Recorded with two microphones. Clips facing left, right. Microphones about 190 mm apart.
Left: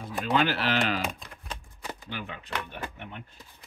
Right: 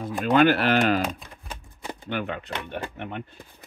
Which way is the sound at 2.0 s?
60° right (ahead or behind).